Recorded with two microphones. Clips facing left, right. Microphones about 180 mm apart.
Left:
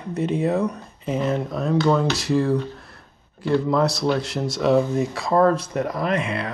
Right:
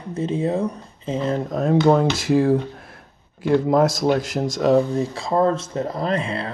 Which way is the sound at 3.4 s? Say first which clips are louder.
Right 3 dB; 50° right (ahead or behind).